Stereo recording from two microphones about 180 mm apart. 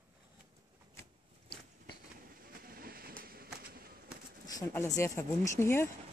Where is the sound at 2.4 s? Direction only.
55° right (ahead or behind).